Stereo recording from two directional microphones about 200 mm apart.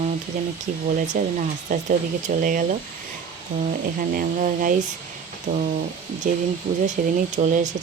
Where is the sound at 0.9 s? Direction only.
40° right (ahead or behind).